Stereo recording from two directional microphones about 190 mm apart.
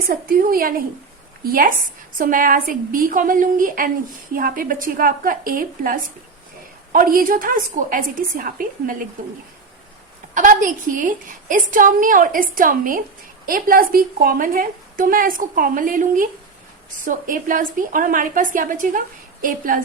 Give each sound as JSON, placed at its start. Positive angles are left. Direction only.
{"t": 0.1, "sound": "a woman's voice", "side_deg": -50}
{"t": 10.3, "sound": "a woman's voice", "side_deg": -45}